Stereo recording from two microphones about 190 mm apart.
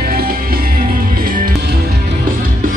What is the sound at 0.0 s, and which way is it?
Music, 50° right (ahead or behind).